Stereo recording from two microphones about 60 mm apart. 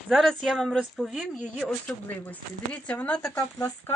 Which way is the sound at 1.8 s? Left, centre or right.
Left.